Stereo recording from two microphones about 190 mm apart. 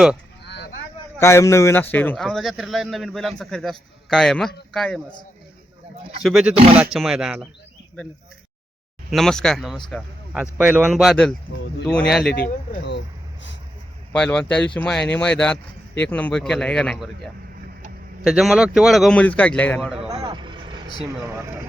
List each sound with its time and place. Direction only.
0.4 s vehicle: 60° left (ahead or behind)
1.2 s a man's voice: 15° left (ahead or behind)
6.0 s speech: 30° right (ahead or behind)
6.2 s speech: centre (ahead or behind)
9.0 s speech: centre (ahead or behind)
12.2 s speech: 55° left (ahead or behind)
14.1 s speech: 5° left (ahead or behind)
18.2 s speech: centre (ahead or behind)
20.2 s vehicle: 25° right (ahead or behind)